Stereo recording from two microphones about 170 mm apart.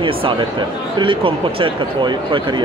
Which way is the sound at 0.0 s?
30° right (ahead or behind).